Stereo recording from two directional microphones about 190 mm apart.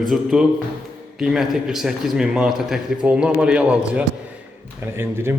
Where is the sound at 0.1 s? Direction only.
5° right (ahead or behind).